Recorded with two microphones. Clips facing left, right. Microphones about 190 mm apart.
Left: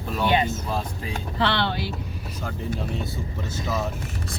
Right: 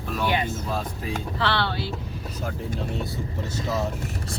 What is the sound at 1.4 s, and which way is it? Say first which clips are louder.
Music: left 3 dB; 20° left (ahead or behind).